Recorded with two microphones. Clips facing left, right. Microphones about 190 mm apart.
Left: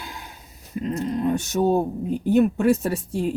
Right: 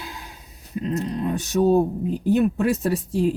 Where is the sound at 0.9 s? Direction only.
Centre (ahead or behind).